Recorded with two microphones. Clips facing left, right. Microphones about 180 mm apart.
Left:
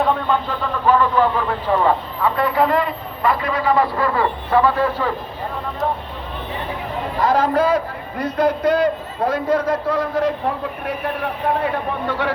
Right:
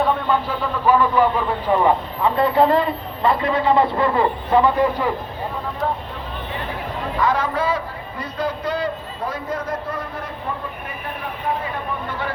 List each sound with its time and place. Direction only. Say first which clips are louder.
0.0 s speech: left 1 dB; 5° right (ahead or behind)
2.3 s a man's voice: right 2 dB; 25° right (ahead or behind)
7.2 s a man's voice: left 4 dB; 40° left (ahead or behind)
8.2 s a man's voice: left 7 dB; 75° left (ahead or behind); by 10.3 s 90° left
11.6 s a man's voice: left 5 dB; 70° left (ahead or behind)